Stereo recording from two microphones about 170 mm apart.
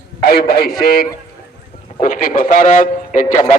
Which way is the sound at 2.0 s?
50° left (ahead or behind).